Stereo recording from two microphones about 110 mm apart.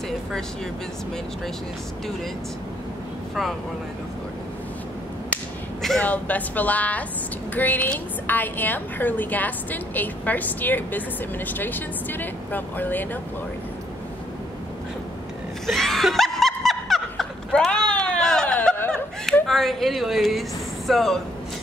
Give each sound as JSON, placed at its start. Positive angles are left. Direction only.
{"t": 5.8, "sound": "a sound", "side_deg": 5}
{"t": 6.0, "sound": "a woman's voice", "side_deg": 15}
{"t": 15.6, "sound": "snicker", "side_deg": 5}
{"t": 19.4, "sound": "speech", "side_deg": 0}